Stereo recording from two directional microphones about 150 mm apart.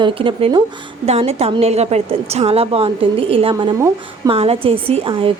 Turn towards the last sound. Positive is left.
turn(degrees=-35)  # may be behind; listen again after turning